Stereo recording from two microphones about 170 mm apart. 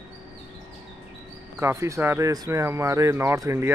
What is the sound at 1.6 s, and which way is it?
Speech, 15° right (ahead or behind).